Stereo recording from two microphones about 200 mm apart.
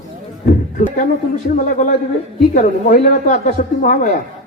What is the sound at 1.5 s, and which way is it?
A man's voice, 40° left (ahead or behind).